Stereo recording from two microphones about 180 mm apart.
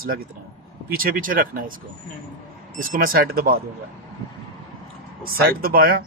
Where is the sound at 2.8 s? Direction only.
50° right (ahead or behind).